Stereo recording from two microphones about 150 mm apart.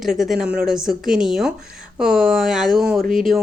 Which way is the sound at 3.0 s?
70° right (ahead or behind).